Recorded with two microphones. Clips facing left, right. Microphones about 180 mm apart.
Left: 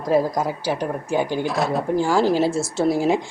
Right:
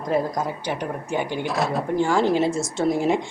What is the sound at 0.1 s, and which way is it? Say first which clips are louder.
Speech: left 4 dB; 10° left (ahead or behind).